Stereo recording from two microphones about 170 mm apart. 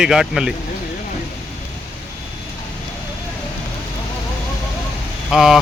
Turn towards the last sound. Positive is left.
turn(degrees=0)  # may be behind; listen again after turning